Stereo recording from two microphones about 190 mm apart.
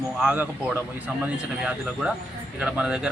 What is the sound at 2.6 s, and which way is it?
Speech, 5° right (ahead or behind).